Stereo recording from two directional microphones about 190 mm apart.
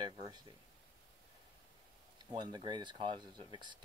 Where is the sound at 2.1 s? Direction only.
20° right (ahead or behind).